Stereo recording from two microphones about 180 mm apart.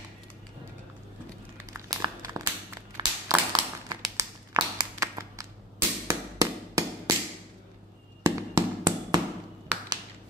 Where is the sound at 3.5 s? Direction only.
25° right (ahead or behind).